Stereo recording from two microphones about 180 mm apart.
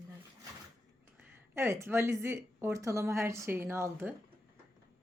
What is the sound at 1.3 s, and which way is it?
Speech, 15° right (ahead or behind).